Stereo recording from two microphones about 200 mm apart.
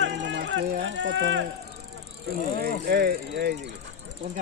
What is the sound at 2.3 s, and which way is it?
Speech, 50° right (ahead or behind).